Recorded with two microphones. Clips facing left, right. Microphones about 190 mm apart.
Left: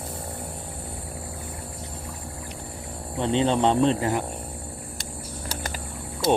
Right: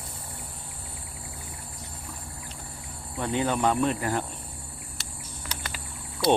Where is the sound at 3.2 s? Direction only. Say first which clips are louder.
Left 4 dB; 25° left (ahead or behind).